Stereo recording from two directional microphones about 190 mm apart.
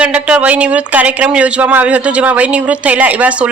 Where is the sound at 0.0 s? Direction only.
5° right (ahead or behind).